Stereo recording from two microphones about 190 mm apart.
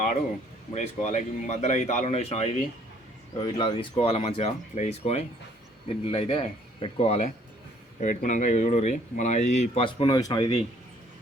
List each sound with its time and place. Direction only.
0.7 s speech: 35° left (ahead or behind)
3.3 s speech: 25° left (ahead or behind)